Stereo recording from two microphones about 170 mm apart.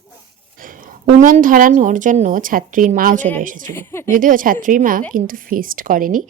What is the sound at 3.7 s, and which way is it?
Speech, 15° left (ahead or behind).